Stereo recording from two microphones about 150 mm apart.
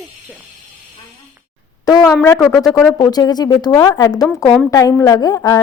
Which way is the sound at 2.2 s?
5° left (ahead or behind).